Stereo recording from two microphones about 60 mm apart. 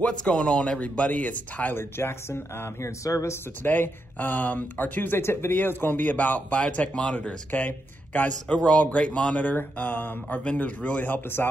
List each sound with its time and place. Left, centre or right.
0.0 s speech: centre
1.8 s speech: left
3.0 s speech: left
3.6 s speech: left
8.5 s speech: centre
9.6 s mantra: left
10.2 s speech: centre; by 11.4 s left